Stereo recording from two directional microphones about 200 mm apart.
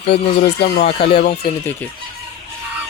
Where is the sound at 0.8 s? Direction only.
30° left (ahead or behind).